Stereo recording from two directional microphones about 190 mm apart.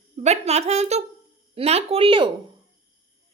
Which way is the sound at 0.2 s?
35° right (ahead or behind).